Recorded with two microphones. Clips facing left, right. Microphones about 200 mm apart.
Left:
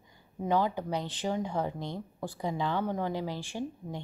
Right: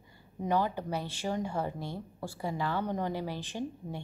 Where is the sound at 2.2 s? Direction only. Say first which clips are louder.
Left 2 dB; 15° left (ahead or behind).